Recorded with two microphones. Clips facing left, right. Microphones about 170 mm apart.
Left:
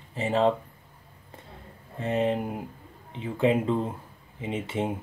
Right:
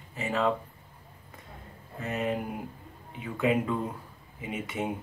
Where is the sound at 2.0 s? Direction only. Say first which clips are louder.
Left 5 dB; 30° left (ahead or behind).